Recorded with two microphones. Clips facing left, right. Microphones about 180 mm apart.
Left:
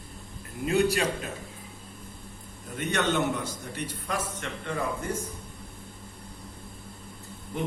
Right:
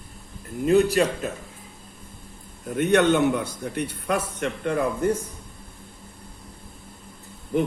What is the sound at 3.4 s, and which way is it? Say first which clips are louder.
A man's voice: right 6 dB; 60° right (ahead or behind).